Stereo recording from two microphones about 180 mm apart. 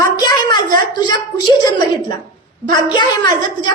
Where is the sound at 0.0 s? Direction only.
20° left (ahead or behind).